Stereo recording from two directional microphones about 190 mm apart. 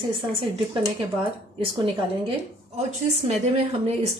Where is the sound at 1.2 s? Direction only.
30° right (ahead or behind).